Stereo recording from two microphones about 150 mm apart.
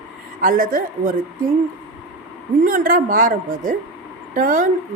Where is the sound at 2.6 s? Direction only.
70° right (ahead or behind).